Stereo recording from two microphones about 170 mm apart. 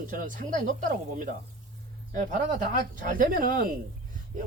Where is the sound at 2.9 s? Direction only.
50° right (ahead or behind).